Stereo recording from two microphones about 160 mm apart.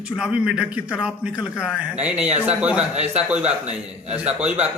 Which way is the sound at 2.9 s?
40° right (ahead or behind).